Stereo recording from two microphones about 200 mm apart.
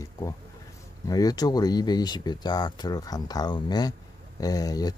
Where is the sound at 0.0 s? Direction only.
15° left (ahead or behind).